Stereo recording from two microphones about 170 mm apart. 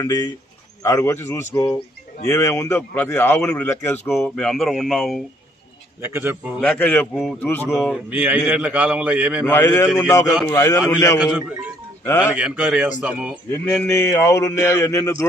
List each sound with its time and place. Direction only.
0.0 s a man's voice: 20° left (ahead or behind); by 5.2 s centre (ahead or behind)
6.0 s a man's voice: 15° right (ahead or behind)
6.6 s speech: 10° left (ahead or behind)
7.7 s a man's voice: centre (ahead or behind)
9.5 s speech: 15° left (ahead or behind)
11.2 s a man's voice: 5° right (ahead or behind)
12.0 s speech: 15° left (ahead or behind)
12.4 s a man's voice: 5° right (ahead or behind)
13.5 s speech: 10° left (ahead or behind)